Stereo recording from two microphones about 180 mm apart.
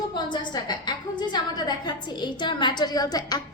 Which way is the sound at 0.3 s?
25° left (ahead or behind).